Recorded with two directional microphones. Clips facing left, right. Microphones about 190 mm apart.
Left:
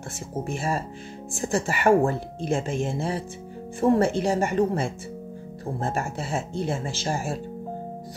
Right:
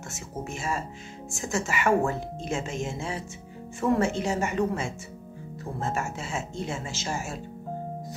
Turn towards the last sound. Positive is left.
turn(degrees=35)  # may be behind; listen again after turning